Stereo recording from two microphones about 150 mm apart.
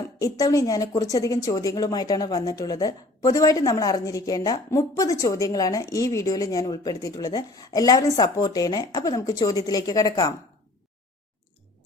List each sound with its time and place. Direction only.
0.2 s speech: 25° left (ahead or behind)